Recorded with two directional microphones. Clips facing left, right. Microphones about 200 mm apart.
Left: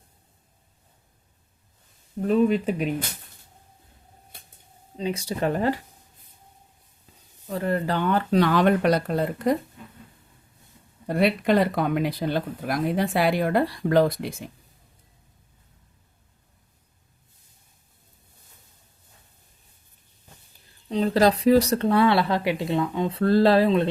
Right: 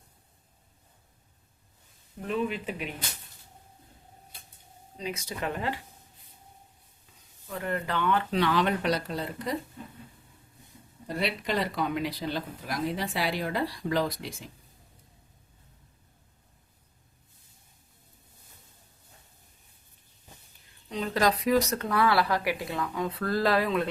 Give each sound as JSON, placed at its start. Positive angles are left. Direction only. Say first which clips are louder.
{"t": 2.2, "sound": "speech", "louder": "left 10 dB", "side_deg": 40}
{"t": 4.9, "sound": "speech", "louder": "left 8 dB", "side_deg": 30}
{"t": 7.4, "sound": "speech", "louder": "left 7 dB", "side_deg": 35}
{"t": 11.0, "sound": "speech", "louder": "left 9 dB", "side_deg": 55}
{"t": 20.9, "sound": "speech", "louder": "left 7 dB", "side_deg": 30}